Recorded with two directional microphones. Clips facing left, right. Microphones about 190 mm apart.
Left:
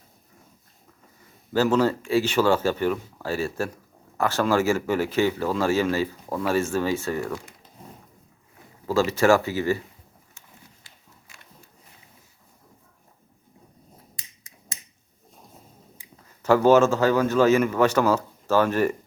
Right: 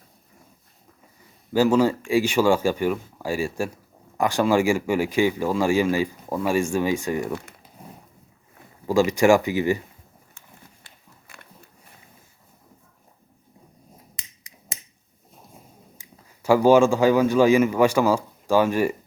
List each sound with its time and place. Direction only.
1.5 s speech: 10° right (ahead or behind)
8.9 s speech: 15° right (ahead or behind)
10.8 s a sound: 60° right (ahead or behind)
16.4 s speech: 10° right (ahead or behind)